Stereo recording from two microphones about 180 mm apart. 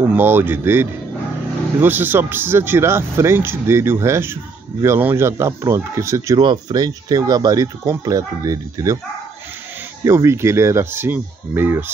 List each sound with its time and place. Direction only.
0.0 s speech: 10° right (ahead or behind)
10.0 s speech: 15° right (ahead or behind)